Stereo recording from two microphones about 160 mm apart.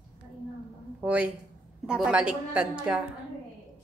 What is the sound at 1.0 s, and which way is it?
A woman's voice, 10° right (ahead or behind).